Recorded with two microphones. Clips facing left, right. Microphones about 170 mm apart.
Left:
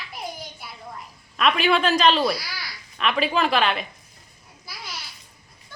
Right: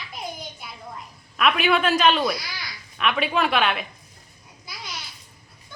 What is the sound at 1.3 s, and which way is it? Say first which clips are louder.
Speech: even; 5° right (ahead or behind).